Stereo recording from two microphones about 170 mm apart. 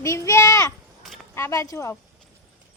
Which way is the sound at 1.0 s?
Centre (ahead or behind).